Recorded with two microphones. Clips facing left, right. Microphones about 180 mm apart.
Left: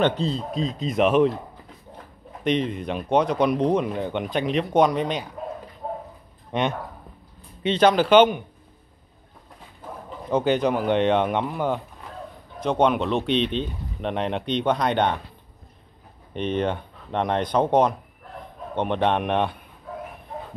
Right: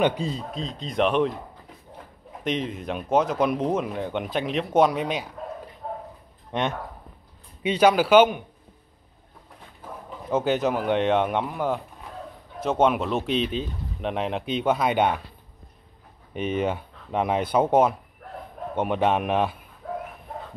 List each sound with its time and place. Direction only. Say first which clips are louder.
0.0 s speech: left 1 dB; 10° right (ahead or behind)
0.6 s speech: left 3 dB; 5° left (ahead or behind)
2.4 s speech: left 4 dB; centre (ahead or behind)
6.5 s speech: left 2 dB; centre (ahead or behind)
10.3 s speech: left 2 dB; 5° right (ahead or behind)
16.3 s speech: left 1 dB; 5° right (ahead or behind)
19.8 s bow-wow: right 4 dB; 60° right (ahead or behind)